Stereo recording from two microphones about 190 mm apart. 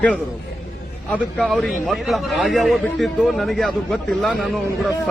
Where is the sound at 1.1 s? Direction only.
Centre (ahead or behind).